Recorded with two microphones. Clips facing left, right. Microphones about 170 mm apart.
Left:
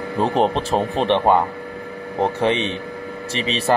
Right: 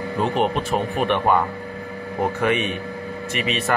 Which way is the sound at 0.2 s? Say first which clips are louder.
Left 3 dB; 35° left (ahead or behind).